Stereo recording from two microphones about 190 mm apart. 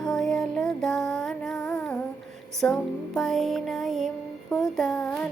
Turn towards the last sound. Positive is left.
turn(degrees=5)  # may be behind; listen again after turning